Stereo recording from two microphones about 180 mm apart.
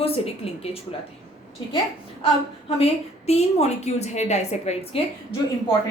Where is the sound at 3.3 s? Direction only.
35° left (ahead or behind).